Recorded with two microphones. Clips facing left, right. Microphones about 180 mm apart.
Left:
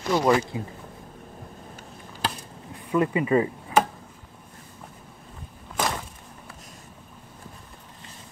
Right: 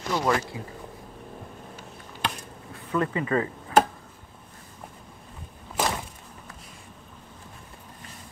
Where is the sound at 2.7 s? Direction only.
15° left (ahead or behind).